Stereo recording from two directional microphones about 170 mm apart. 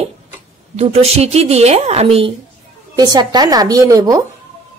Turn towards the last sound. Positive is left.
turn(degrees=-20)  # may be behind; listen again after turning